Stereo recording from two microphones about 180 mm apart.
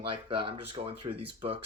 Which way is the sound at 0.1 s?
30° right (ahead or behind).